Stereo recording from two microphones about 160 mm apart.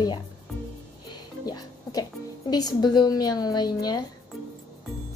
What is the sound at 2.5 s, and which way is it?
Speech, 25° left (ahead or behind).